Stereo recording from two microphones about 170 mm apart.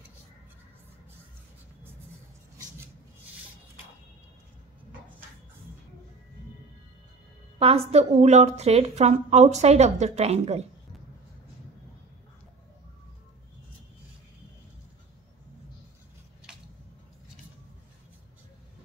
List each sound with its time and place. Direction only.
7.5 s a woman's voice: 35° right (ahead or behind)